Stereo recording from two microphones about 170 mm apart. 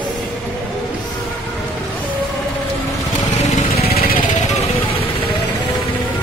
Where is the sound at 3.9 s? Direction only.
65° left (ahead or behind).